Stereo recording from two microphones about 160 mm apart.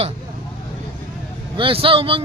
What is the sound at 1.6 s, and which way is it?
Speech, 35° right (ahead or behind).